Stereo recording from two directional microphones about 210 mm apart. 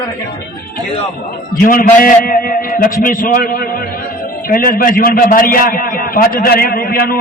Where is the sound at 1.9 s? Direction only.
45° left (ahead or behind).